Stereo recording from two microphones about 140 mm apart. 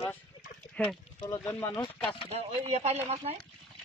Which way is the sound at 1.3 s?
15° left (ahead or behind).